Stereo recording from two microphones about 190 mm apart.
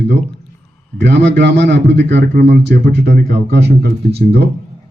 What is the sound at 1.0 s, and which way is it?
A man's voice, 65° right (ahead or behind).